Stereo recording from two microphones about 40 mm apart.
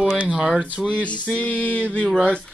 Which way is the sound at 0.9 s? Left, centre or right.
Left.